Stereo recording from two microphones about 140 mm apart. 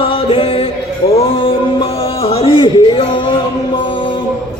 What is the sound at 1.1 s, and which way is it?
Music, 40° left (ahead or behind).